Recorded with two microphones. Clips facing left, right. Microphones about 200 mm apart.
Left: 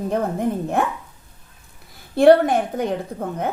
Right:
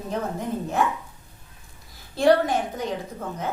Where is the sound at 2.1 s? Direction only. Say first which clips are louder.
Left 6 dB; 60° left (ahead or behind).